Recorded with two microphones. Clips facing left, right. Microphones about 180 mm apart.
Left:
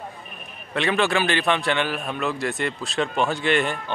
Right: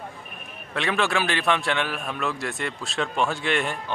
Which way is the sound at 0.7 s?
Centre (ahead or behind).